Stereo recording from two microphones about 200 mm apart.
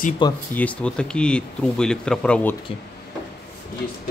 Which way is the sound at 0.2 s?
25° left (ahead or behind).